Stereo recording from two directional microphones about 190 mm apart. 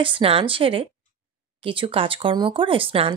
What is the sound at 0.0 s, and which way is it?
Speech, 30° right (ahead or behind).